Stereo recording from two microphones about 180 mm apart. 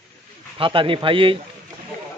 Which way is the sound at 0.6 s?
30° right (ahead or behind).